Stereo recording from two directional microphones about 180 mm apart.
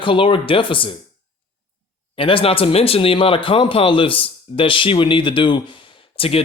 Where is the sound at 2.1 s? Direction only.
30° left (ahead or behind).